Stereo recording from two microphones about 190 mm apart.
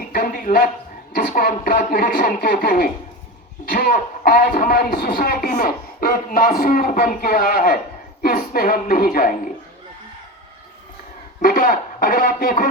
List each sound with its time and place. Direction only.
0.1 s a sound: 50° left (ahead or behind)
1.1 s speech: 50° left (ahead or behind)
11.4 s speech: 45° left (ahead or behind)